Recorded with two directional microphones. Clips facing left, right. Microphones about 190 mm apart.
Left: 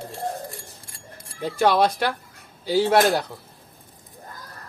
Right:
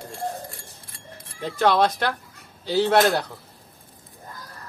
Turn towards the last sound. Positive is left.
turn(degrees=10)  # may be behind; listen again after turning